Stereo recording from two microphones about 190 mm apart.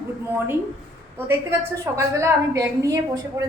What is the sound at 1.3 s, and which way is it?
A woman's voice, 15° right (ahead or behind).